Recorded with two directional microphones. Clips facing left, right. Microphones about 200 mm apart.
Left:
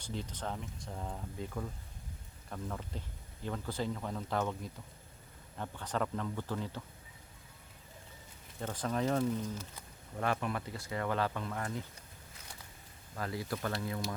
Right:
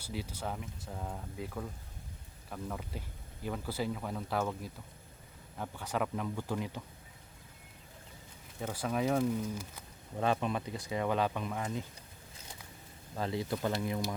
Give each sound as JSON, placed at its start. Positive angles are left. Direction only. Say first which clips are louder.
{"t": 0.0, "sound": "speech", "louder": "right 1 dB", "side_deg": -10}
{"t": 8.6, "sound": "speech", "louder": "right 1 dB", "side_deg": -10}
{"t": 13.1, "sound": "speech", "louder": "right 3 dB", "side_deg": -25}